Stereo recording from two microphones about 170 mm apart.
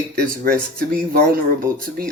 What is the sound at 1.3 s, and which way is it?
Speech, 55° right (ahead or behind).